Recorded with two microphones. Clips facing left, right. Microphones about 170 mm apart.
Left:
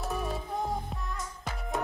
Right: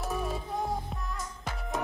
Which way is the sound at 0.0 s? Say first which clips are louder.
Even; centre (ahead or behind).